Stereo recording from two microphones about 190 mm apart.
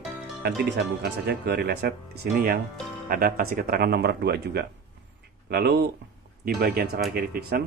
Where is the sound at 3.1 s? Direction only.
50° right (ahead or behind).